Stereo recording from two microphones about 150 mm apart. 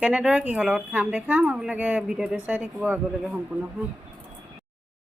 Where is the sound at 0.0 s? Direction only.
5° right (ahead or behind).